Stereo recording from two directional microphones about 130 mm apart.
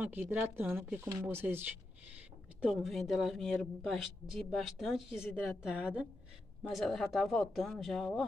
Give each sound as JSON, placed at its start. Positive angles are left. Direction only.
{"t": 0.0, "sound": "speech", "side_deg": -15}
{"t": 2.6, "sound": "a woman's voice", "side_deg": 0}